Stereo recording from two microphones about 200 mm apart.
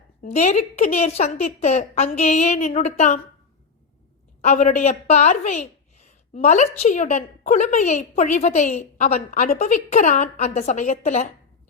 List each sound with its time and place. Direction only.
0.2 s a woman's voice: 35° left (ahead or behind)
4.4 s a woman's voice: 35° left (ahead or behind)